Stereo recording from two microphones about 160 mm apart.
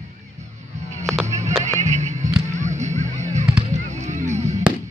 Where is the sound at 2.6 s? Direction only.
45° right (ahead or behind).